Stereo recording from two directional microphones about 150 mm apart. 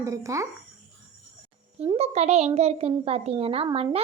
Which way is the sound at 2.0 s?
45° right (ahead or behind).